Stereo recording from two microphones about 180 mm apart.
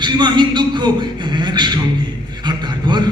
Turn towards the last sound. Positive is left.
turn(degrees=-25)  # may be behind; listen again after turning